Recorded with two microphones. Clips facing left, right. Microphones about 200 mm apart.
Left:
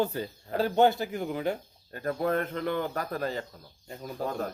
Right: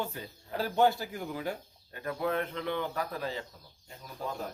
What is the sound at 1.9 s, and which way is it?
Speech, 45° left (ahead or behind).